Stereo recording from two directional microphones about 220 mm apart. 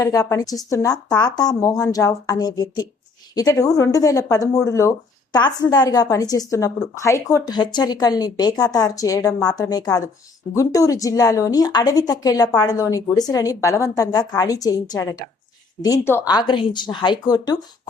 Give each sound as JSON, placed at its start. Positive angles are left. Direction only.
{"t": 0.0, "sound": "speech", "side_deg": 15}